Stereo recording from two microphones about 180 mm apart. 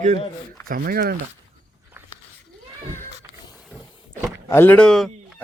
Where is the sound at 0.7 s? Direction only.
55° right (ahead or behind).